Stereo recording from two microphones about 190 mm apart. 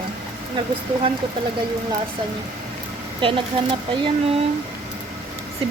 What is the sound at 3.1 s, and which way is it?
Speech, 25° right (ahead or behind).